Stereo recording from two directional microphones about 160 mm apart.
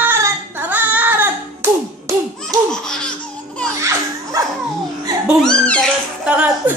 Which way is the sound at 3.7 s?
20° right (ahead or behind).